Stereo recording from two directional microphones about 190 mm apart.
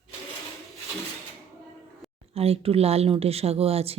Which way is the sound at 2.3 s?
30° right (ahead or behind).